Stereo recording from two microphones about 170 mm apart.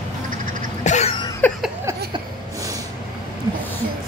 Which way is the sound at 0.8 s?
45° left (ahead or behind).